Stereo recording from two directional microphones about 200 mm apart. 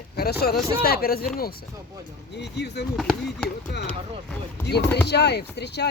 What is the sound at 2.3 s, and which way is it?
Speech, 55° left (ahead or behind).